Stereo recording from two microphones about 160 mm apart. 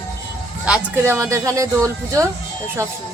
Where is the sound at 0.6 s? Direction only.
5° right (ahead or behind).